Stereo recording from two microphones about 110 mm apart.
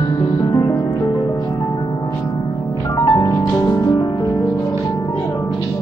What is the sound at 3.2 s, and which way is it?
Music, 30° left (ahead or behind).